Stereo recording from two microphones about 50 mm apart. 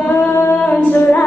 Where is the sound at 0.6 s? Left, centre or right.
Left.